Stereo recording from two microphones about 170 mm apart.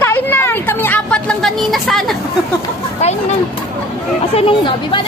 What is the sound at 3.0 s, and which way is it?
Speech, 40° left (ahead or behind).